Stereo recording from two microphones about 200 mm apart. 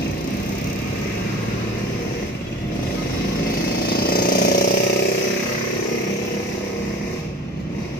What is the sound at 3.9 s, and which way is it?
Jackhammer, 45° left (ahead or behind).